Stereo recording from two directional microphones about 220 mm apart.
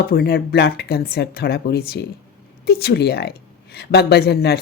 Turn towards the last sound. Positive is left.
turn(degrees=45)  # may be behind; listen again after turning